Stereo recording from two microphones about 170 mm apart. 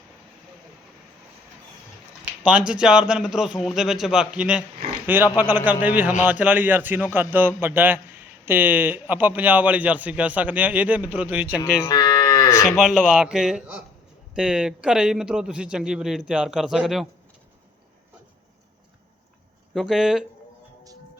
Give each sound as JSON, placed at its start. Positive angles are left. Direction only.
{"t": 2.4, "sound": "a man's voice", "side_deg": -5}
{"t": 11.6, "sound": "livestock", "side_deg": 20}
{"t": 12.6, "sound": "a man's voice", "side_deg": -5}
{"t": 19.7, "sound": "a man's voice", "side_deg": 0}